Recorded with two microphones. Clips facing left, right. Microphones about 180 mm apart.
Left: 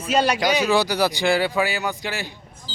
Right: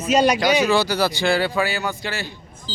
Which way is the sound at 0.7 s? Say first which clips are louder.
Even; 15° left (ahead or behind).